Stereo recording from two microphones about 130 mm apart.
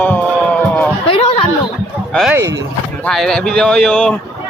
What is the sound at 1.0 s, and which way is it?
Speech, 45° left (ahead or behind).